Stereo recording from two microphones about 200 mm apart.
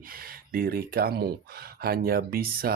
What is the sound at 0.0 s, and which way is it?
Speech, 45° right (ahead or behind).